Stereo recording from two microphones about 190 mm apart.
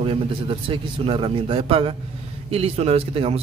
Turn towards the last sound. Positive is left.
turn(degrees=-30)  # may be behind; listen again after turning